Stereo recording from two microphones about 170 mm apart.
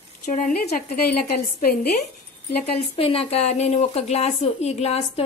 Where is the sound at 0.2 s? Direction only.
50° left (ahead or behind).